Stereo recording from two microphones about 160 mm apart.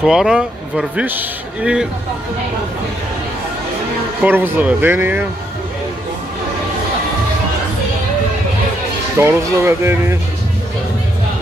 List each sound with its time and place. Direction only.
0.0 s a man's voice: 5° right (ahead or behind)
4.2 s speech: 10° right (ahead or behind)
9.2 s speech: 15° right (ahead or behind)